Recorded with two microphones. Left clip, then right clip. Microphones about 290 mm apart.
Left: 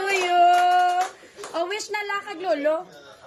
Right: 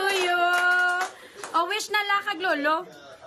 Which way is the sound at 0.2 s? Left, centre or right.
Right.